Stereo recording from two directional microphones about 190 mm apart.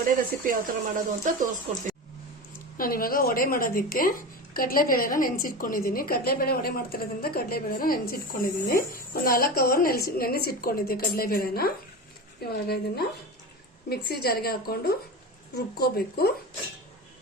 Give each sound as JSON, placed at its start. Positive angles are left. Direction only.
{"t": 0.4, "sound": "speech", "side_deg": -45}
{"t": 2.7, "sound": "a woman's voice", "side_deg": 50}